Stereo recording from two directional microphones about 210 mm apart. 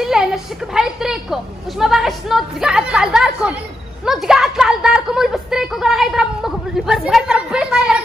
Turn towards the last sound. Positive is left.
turn(degrees=-5)  # may be behind; listen again after turning